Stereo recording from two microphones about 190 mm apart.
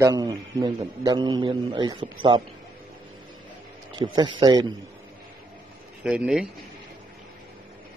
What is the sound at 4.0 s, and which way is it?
Speech, 25° right (ahead or behind).